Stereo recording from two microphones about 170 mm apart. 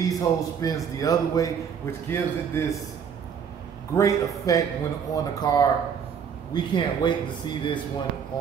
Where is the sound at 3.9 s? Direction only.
20° left (ahead or behind).